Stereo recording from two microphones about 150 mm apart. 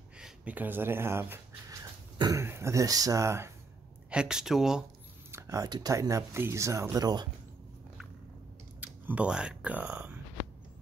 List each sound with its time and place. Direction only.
0.2 s speech: 10° right (ahead or behind)
2.1 s a sound: 25° right (ahead or behind)
2.4 s speech: 15° right (ahead or behind)
4.1 s speech: 5° right (ahead or behind)
5.3 s speech: 20° right (ahead or behind)
8.8 s speech: 10° right (ahead or behind)